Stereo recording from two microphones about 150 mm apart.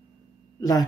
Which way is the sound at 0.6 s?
25° left (ahead or behind).